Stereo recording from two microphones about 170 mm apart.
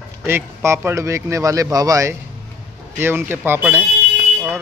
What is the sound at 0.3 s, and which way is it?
Speech, 15° right (ahead or behind).